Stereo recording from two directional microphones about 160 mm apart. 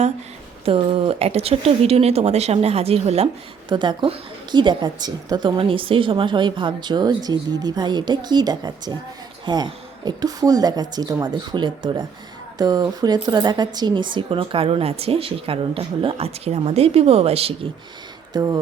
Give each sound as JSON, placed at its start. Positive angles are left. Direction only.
{"t": 0.6, "sound": "speech", "side_deg": -35}
{"t": 3.7, "sound": "a woman's voice", "side_deg": -30}
{"t": 18.3, "sound": "a woman's voice", "side_deg": -20}